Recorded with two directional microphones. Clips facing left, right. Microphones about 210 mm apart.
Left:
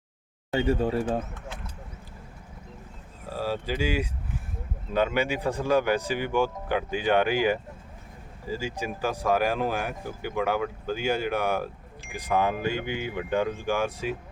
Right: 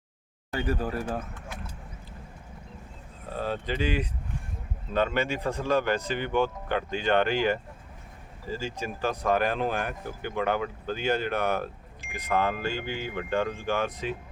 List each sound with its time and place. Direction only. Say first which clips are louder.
0.5 s speech: left 5 dB; 25° left (ahead or behind)
3.3 s speech: left 1 dB; 5° left (ahead or behind)